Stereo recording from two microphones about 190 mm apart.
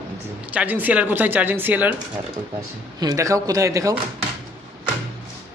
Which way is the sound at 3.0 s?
15° right (ahead or behind).